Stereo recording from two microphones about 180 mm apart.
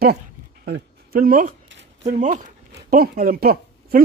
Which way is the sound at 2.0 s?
40° right (ahead or behind).